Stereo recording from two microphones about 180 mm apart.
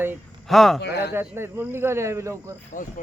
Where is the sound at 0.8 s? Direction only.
70° left (ahead or behind).